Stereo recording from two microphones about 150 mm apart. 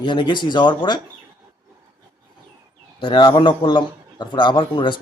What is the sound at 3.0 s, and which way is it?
A man's voice, 30° left (ahead or behind).